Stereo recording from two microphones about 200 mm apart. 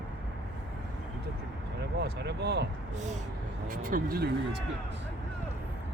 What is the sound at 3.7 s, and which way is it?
Speech, 45° right (ahead or behind).